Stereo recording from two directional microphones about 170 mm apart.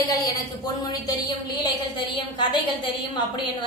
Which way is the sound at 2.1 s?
30° left (ahead or behind).